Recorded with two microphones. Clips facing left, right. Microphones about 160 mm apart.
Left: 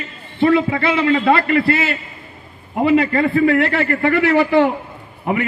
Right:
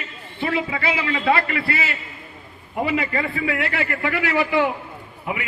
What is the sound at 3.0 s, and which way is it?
A man's voice, 45° left (ahead or behind).